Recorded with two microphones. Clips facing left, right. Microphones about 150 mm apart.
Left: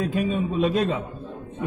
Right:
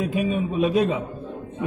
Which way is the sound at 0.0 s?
10° right (ahead or behind).